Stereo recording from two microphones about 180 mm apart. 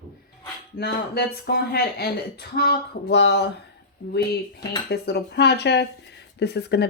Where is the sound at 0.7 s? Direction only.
60° left (ahead or behind).